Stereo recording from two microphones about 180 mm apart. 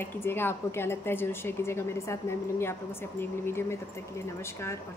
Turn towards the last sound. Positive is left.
turn(degrees=15)  # may be behind; listen again after turning